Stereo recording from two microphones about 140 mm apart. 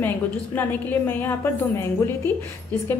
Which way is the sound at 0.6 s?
15° left (ahead or behind).